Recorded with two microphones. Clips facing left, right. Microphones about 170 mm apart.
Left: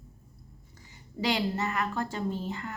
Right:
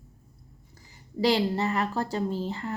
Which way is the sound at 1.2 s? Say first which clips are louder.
Right 5 dB; 35° right (ahead or behind).